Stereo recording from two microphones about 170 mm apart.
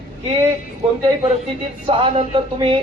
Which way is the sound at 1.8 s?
30° right (ahead or behind).